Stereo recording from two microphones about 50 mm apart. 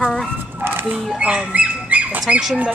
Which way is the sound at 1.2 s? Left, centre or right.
Right.